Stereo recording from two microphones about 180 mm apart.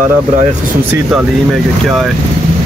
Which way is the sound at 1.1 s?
Centre (ahead or behind).